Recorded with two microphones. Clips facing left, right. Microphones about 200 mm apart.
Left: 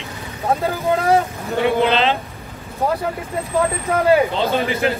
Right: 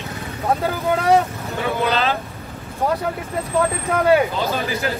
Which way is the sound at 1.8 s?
25° left (ahead or behind).